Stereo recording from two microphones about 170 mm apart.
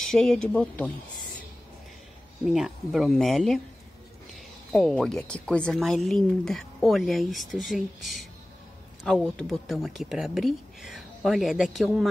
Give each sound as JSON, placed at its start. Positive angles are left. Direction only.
{"t": 0.0, "sound": "speech", "side_deg": 5}
{"t": 2.4, "sound": "speech", "side_deg": -5}
{"t": 4.7, "sound": "speech", "side_deg": 0}